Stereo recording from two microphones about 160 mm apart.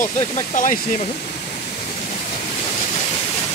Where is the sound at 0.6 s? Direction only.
50° left (ahead or behind).